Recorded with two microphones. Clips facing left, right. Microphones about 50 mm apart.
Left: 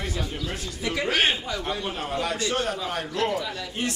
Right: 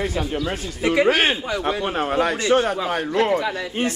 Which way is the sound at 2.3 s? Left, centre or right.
Right.